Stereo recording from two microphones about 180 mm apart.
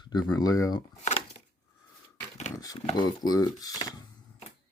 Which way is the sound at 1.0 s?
35° left (ahead or behind).